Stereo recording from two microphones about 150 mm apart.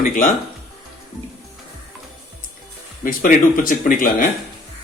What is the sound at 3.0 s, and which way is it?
Speech, 65° left (ahead or behind).